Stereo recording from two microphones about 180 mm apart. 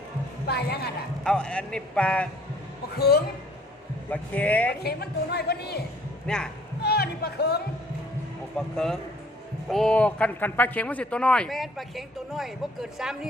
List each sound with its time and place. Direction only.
0.4 s a woman's voice: 60° left (ahead or behind)
1.2 s a man's voice: 5° left (ahead or behind)
2.9 s a woman's voice: 60° left (ahead or behind)
4.1 s speech: 10° left (ahead or behind)
4.7 s a woman's voice: 60° left (ahead or behind)
6.2 s speech: 5° left (ahead or behind)
6.8 s music: 60° left (ahead or behind)
8.5 s a man's voice: 5° left (ahead or behind)